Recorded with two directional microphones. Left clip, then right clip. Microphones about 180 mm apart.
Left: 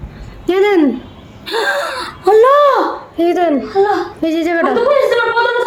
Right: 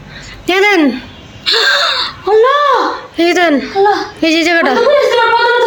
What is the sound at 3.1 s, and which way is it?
Speech, centre (ahead or behind).